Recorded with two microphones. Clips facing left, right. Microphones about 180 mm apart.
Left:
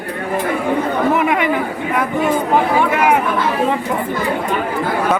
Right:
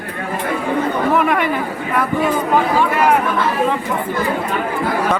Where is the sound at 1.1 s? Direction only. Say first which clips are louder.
Even; 15° left (ahead or behind).